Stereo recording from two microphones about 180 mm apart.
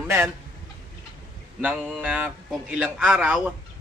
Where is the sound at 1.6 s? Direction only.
5° right (ahead or behind).